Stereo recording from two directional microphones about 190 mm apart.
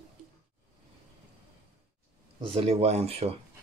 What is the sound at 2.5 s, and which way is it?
Speech, 30° right (ahead or behind).